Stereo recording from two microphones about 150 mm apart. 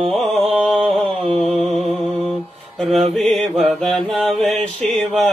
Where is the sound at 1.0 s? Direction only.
40° right (ahead or behind).